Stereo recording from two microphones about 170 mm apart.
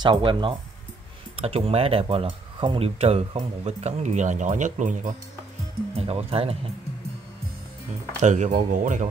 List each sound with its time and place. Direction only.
0.0 s speech: 30° right (ahead or behind); by 5.1 s 50° right (ahead or behind)
5.9 s speech: 35° right (ahead or behind)
8.2 s speech: 45° right (ahead or behind)